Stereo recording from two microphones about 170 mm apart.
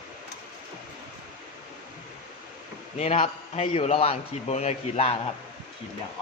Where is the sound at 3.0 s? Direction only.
35° left (ahead or behind).